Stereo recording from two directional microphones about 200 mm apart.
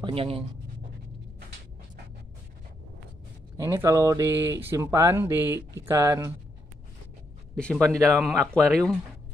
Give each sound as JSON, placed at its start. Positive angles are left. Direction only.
{"t": 0.0, "sound": "speech", "side_deg": -30}
{"t": 3.5, "sound": "speech", "side_deg": -15}
{"t": 7.5, "sound": "speech", "side_deg": 5}